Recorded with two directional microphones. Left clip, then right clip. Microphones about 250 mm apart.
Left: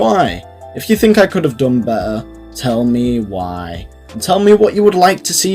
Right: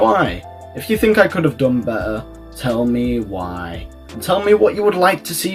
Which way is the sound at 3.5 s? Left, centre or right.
Left.